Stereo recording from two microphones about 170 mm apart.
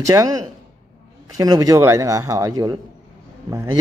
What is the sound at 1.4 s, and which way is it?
A man's voice, 20° right (ahead or behind).